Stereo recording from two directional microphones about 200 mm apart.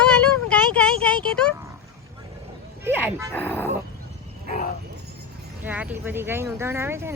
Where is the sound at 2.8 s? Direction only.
10° right (ahead or behind).